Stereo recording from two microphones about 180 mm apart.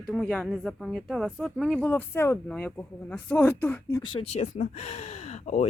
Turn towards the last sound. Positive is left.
turn(degrees=40)  # may be behind; listen again after turning